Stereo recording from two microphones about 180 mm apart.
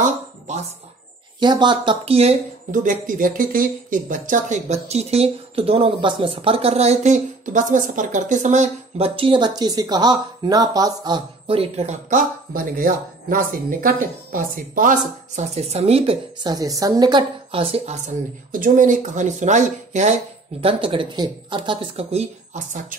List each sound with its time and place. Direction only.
0.0 s a sound: 40° right (ahead or behind)
1.4 s speech: 25° right (ahead or behind); by 20.2 s 40° right (ahead or behind)
20.6 s speech: 30° right (ahead or behind); by 22.9 s 45° right (ahead or behind)